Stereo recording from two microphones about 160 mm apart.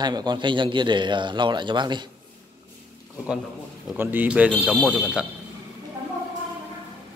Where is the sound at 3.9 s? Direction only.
10° right (ahead or behind).